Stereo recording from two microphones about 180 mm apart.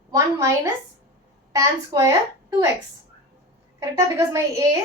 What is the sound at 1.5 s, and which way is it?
A woman's voice, 20° right (ahead or behind).